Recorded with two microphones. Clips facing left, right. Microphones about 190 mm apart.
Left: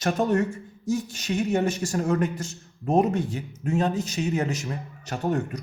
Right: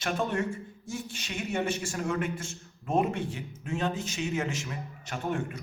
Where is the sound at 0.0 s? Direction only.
40° left (ahead or behind).